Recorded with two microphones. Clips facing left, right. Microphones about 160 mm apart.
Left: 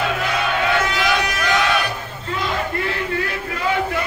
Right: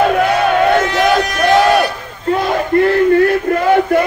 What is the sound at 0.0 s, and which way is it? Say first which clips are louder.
Crowd: right 10 dB; 50° right (ahead or behind).